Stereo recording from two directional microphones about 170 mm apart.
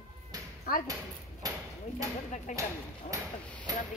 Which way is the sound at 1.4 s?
20° right (ahead or behind).